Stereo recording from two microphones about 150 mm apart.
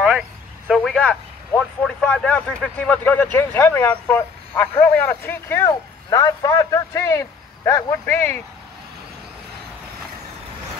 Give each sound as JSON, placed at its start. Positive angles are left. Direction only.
{"t": 0.7, "sound": "speech", "side_deg": 0}